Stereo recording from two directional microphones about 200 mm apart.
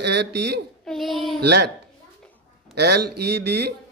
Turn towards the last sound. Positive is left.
turn(degrees=-55)  # may be behind; listen again after turning